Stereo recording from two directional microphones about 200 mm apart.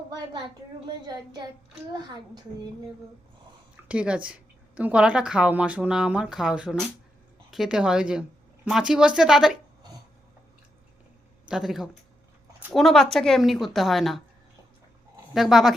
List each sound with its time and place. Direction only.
1.0 s a child's voice: 20° right (ahead or behind)
3.8 s a woman's voice: 5° right (ahead or behind)
11.4 s a woman's voice: centre (ahead or behind)
15.3 s a woman's voice: centre (ahead or behind)